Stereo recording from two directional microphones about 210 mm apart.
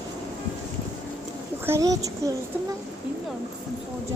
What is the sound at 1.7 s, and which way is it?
Speech, 15° right (ahead or behind).